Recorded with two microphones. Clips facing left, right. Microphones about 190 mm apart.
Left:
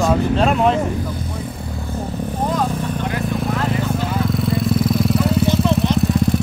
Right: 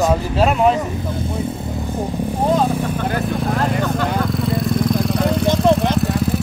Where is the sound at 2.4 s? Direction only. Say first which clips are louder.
Right 4 dB; 30° right (ahead or behind).